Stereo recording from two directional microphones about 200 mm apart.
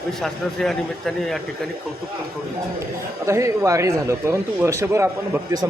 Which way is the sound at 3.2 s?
15° right (ahead or behind).